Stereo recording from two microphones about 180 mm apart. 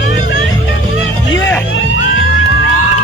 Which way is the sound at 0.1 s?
85° left.